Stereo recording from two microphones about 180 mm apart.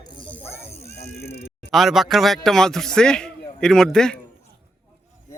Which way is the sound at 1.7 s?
Centre (ahead or behind).